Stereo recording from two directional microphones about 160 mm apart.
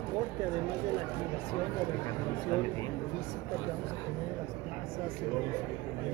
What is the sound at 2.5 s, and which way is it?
Speech, 15° left (ahead or behind).